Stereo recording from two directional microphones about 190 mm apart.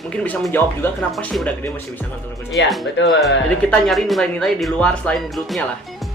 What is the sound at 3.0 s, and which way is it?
Speech, 70° left (ahead or behind).